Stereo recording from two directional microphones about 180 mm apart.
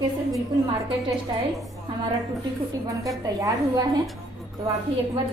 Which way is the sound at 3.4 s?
20° right (ahead or behind).